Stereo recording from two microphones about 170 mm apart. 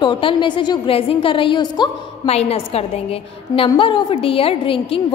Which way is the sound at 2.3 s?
35° left (ahead or behind).